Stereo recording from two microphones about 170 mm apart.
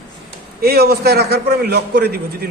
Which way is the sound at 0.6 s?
65° right (ahead or behind).